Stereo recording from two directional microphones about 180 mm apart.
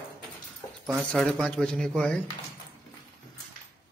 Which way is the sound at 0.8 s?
5° right (ahead or behind).